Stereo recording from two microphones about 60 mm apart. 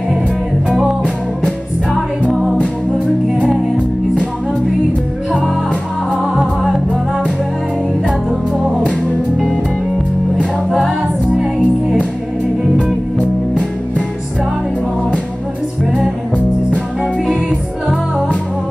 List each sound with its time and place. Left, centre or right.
1.4 s music: centre
6.2 s music: centre
11.3 s music: centre
13.2 s music: centre
17.3 s music: centre